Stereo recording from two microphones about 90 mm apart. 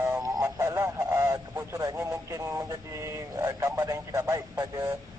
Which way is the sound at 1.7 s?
40° right (ahead or behind).